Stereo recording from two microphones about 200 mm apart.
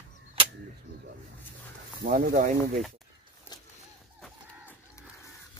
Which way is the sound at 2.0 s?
40° right (ahead or behind).